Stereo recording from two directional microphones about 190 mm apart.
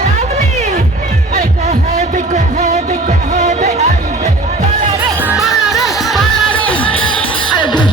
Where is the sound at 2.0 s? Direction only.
40° right (ahead or behind).